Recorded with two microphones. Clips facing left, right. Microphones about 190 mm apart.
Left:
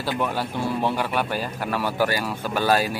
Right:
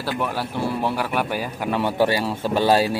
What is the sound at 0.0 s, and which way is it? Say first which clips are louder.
A man's voice: even; 5° right (ahead or behind).